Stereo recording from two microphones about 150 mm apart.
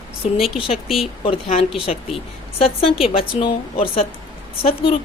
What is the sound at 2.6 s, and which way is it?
A woman's voice, 40° left (ahead or behind).